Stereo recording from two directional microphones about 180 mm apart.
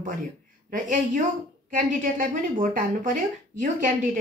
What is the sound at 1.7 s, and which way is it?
A woman's voice, 50° right (ahead or behind).